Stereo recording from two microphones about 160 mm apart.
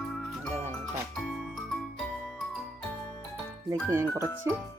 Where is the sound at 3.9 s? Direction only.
15° right (ahead or behind).